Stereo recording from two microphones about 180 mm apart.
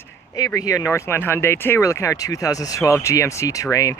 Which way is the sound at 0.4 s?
20° left (ahead or behind).